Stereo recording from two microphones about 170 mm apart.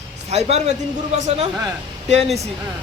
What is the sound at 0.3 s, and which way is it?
Speech, 40° right (ahead or behind).